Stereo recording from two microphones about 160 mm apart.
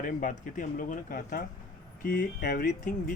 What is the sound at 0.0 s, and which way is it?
Speech, 55° left (ahead or behind).